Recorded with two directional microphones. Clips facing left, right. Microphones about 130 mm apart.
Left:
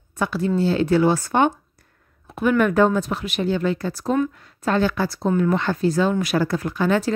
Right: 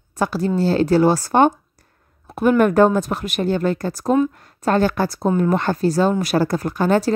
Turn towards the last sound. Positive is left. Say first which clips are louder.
# right 3 dB
turn(degrees=-40)  # may be behind; listen again after turning